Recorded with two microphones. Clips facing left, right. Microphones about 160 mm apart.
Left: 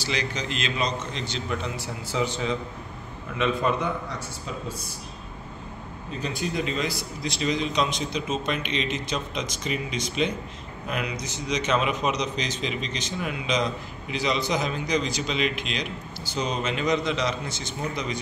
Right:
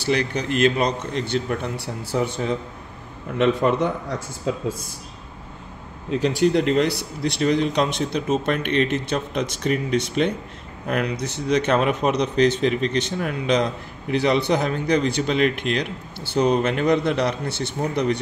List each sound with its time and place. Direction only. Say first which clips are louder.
0.0 s speech: right 7 dB; 60° right (ahead or behind)
3.3 s a man's voice: right 6 dB; 70° right (ahead or behind)
6.1 s speech: right 10 dB; 85° right; by 18.2 s 65° right (ahead or behind)